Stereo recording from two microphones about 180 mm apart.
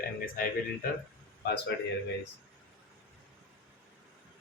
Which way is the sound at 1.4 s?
65° left (ahead or behind).